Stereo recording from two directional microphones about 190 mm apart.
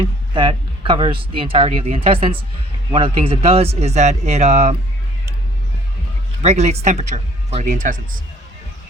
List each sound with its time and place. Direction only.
0.0 s a man's voice: 25° right (ahead or behind)
6.4 s a man's voice: 35° right (ahead or behind)